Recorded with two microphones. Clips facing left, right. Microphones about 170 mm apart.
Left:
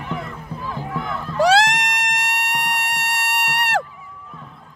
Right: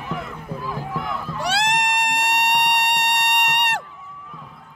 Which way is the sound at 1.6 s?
90° left.